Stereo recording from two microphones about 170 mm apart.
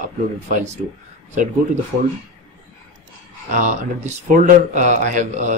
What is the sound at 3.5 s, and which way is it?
Speech, 45° right (ahead or behind).